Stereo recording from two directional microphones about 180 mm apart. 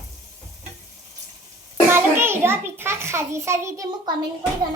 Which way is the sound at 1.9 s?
15° right (ahead or behind).